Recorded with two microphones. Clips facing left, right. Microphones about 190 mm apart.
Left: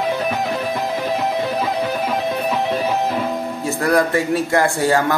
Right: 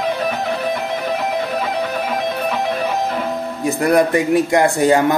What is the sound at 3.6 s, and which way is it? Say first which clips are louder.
A man's voice: right 3 dB; 20° right (ahead or behind).